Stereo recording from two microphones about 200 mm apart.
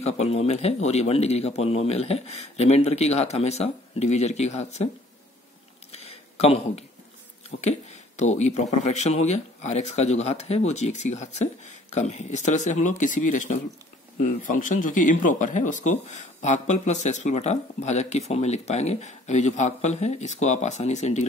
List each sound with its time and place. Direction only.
0.0 s speech: 30° left (ahead or behind)
5.9 s a sound: 30° left (ahead or behind)
7.6 s speech: 35° left (ahead or behind)